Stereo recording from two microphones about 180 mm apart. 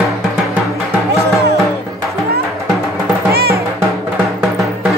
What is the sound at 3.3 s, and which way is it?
Music, 60° right (ahead or behind).